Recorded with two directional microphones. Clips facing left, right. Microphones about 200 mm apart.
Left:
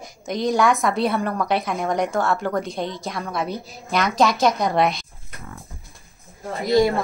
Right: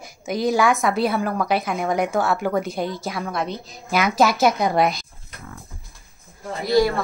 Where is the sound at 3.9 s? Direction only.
5° right (ahead or behind).